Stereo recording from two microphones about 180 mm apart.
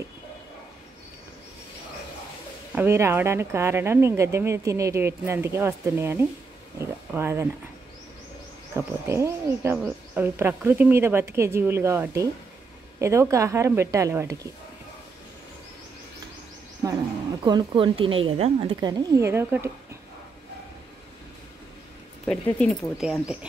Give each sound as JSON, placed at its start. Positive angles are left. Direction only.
{"t": 2.7, "sound": "a woman's voice", "side_deg": -15}
{"t": 6.8, "sound": "a sound", "side_deg": -15}
{"t": 8.7, "sound": "a woman's voice", "side_deg": -15}
{"t": 17.5, "sound": "a woman's voice", "side_deg": -25}
{"t": 22.2, "sound": "speech", "side_deg": 5}